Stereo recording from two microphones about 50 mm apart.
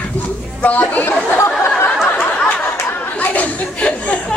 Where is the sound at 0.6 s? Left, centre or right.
Left.